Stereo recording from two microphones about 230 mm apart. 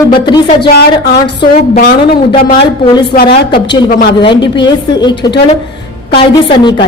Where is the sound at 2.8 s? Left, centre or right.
Left.